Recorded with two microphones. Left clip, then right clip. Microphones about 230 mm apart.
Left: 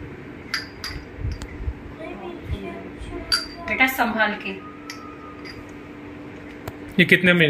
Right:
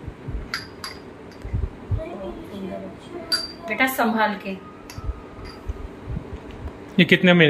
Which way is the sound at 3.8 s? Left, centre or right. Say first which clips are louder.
Left 1 dB; centre.